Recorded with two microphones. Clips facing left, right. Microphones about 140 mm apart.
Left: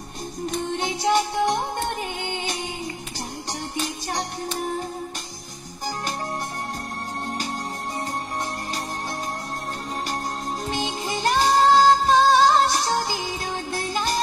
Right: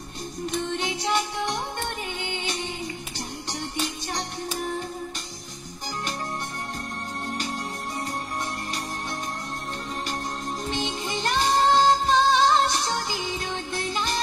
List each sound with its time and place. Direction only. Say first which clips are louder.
0.7 s music: left 8 dB; 40° left (ahead or behind)
10.9 s music: left 3 dB; 35° left (ahead or behind)